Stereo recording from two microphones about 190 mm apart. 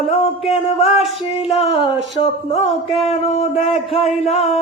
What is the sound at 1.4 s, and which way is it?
Music, 30° left (ahead or behind).